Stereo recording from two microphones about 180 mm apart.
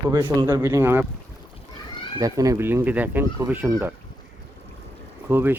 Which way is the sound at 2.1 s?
20° right (ahead or behind).